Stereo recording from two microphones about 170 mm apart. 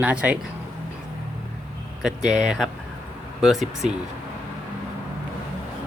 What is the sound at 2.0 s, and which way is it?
Speech, 5° right (ahead or behind).